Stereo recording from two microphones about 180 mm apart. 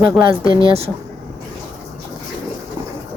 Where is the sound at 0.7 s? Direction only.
35° right (ahead or behind).